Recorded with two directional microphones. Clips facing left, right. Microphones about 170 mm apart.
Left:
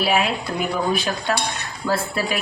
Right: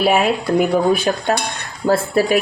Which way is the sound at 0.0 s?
45° right (ahead or behind).